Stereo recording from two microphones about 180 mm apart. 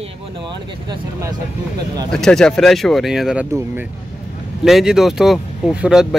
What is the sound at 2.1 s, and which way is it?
Speech, 5° left (ahead or behind).